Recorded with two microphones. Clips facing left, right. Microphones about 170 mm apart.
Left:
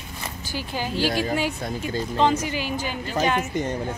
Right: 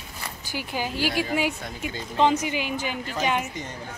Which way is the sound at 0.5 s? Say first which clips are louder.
Left 1 dB; 15° right (ahead or behind).